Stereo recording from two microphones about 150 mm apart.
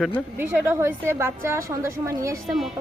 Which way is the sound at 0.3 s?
15° right (ahead or behind).